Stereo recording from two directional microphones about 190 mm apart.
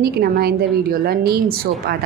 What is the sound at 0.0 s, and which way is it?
A woman's voice, 55° right (ahead or behind).